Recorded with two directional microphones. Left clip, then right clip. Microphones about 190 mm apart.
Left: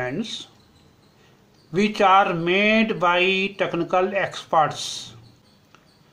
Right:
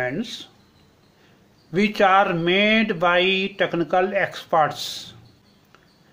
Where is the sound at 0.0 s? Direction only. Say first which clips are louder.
Right 1 dB; 20° right (ahead or behind).